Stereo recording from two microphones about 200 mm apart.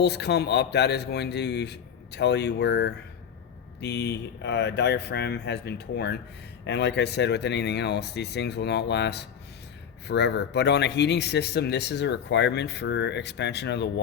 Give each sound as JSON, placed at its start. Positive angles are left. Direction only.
{"t": 0.0, "sound": "speech", "side_deg": 55}